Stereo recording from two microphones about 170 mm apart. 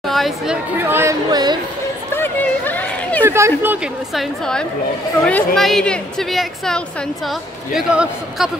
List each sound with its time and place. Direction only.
0.1 s speech: centre (ahead or behind)
0.7 s speech: 15° right (ahead or behind)
2.1 s a sound: 10° left (ahead or behind)
3.3 s speech: 15° right (ahead or behind)
4.1 s a woman's voice: centre (ahead or behind)